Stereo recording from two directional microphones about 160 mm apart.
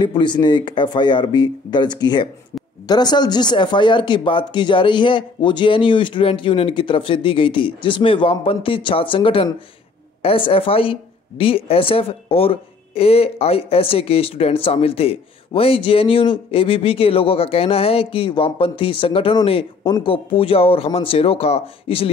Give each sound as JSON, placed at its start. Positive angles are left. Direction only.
{"t": 0.0, "sound": "a woman's voice", "side_deg": 30}